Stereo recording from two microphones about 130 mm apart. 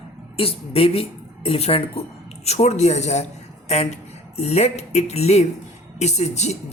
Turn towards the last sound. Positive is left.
turn(degrees=60)  # may be behind; listen again after turning